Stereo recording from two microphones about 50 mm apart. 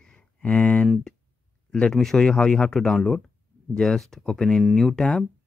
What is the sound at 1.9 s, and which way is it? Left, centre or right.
Speech, centre.